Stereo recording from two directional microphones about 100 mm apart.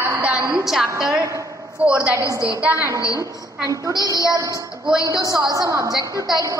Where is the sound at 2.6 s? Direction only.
20° right (ahead or behind).